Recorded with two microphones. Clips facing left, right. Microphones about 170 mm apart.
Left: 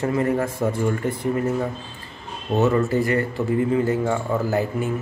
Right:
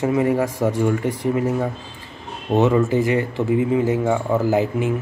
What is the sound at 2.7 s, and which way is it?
Speech, 10° right (ahead or behind).